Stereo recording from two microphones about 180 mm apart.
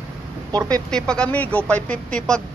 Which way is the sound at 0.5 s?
20° right (ahead or behind).